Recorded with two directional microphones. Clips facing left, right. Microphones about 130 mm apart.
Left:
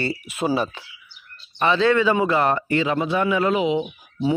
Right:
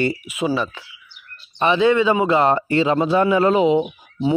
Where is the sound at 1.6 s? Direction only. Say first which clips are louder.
Right 2 dB; 15° right (ahead or behind).